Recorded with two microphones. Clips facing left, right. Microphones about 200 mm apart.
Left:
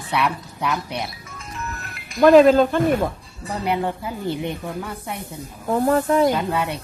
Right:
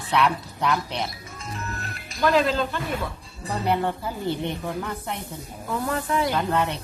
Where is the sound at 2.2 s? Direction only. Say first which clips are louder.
Left 10 dB; 50° left (ahead or behind).